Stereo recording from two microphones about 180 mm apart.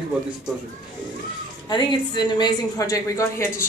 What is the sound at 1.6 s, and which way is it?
A woman's voice, 25° left (ahead or behind).